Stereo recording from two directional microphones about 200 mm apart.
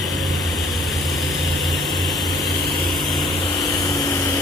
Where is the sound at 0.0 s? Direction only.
Centre (ahead or behind).